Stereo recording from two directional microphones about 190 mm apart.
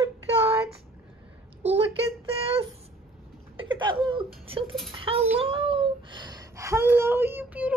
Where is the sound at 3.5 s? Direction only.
25° right (ahead or behind).